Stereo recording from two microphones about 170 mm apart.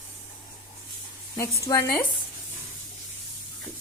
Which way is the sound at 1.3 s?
20° left (ahead or behind).